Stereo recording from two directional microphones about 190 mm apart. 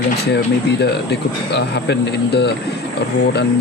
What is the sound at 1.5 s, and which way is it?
Speech, 65° left (ahead or behind).